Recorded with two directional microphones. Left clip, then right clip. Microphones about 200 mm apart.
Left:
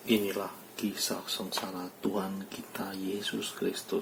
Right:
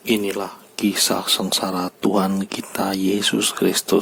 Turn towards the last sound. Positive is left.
turn(degrees=-55)  # may be behind; listen again after turning